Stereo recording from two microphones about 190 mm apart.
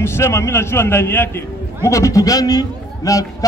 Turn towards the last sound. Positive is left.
turn(degrees=20)  # may be behind; listen again after turning